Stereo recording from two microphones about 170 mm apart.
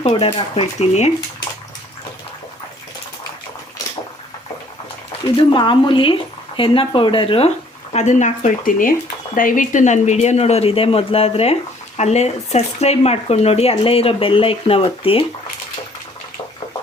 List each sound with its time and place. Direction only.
0.0 s speech: 30° left (ahead or behind)
5.4 s speech: 30° left (ahead or behind)
7.9 s speech: 45° left (ahead or behind)